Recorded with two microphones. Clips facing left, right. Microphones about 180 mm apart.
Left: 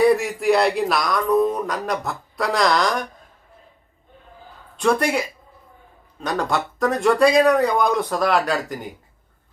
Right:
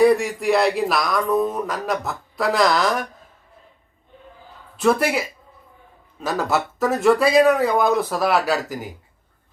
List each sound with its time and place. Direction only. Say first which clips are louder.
0.0 s speech: right 1 dB; centre (ahead or behind)
4.8 s speech: right 1 dB; 5° right (ahead or behind)